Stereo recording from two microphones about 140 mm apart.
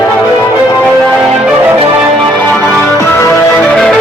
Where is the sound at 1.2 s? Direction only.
10° right (ahead or behind).